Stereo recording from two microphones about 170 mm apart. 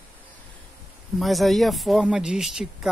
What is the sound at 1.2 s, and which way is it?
Speech, centre (ahead or behind).